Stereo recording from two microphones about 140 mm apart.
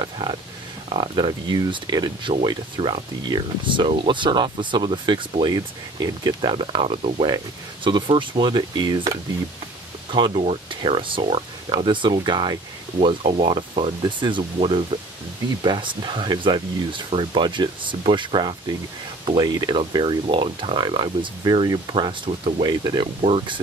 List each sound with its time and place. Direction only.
0.0 s speech: 30° right (ahead or behind)
6.5 s speech: 40° right (ahead or behind)
13.0 s speech: 45° right (ahead or behind)